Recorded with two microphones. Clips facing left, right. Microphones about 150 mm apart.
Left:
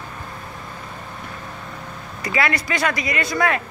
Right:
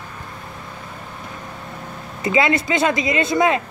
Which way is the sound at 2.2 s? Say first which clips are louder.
Right 5 dB; 20° right (ahead or behind).